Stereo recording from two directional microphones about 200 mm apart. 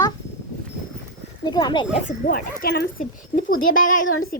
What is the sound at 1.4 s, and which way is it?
Speech, 20° left (ahead or behind).